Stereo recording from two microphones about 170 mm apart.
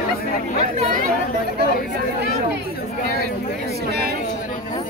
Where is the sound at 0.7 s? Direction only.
45° right (ahead or behind).